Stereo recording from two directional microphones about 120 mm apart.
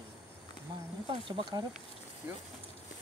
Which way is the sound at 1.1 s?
40° right (ahead or behind).